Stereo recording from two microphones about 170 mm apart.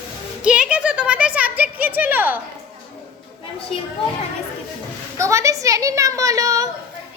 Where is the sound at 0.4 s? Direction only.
5° right (ahead or behind).